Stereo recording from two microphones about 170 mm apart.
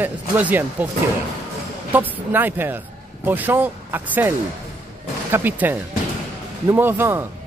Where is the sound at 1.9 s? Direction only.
10° right (ahead or behind).